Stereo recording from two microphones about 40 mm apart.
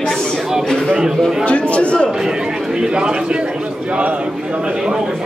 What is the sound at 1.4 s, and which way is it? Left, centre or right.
Speech, left.